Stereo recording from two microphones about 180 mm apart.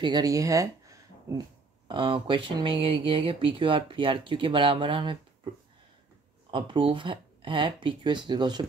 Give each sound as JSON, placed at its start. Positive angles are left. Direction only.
{"t": 0.0, "sound": "speech", "side_deg": -20}
{"t": 6.5, "sound": "speech", "side_deg": -30}